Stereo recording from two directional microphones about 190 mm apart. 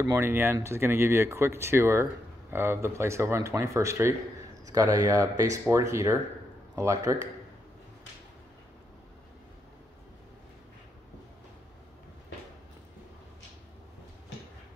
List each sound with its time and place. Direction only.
0.0 s speech: 15° right (ahead or behind)